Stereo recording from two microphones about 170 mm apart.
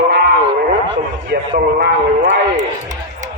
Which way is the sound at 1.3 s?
80° right.